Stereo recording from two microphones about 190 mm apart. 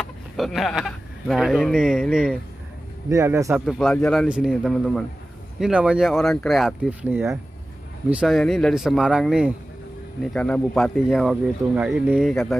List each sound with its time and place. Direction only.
0.0 s speech: centre (ahead or behind)
3.1 s a man's voice: 15° right (ahead or behind)
3.5 s speech: centre (ahead or behind)